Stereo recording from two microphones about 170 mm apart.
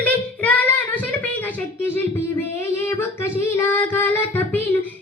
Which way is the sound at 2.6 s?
15° left (ahead or behind).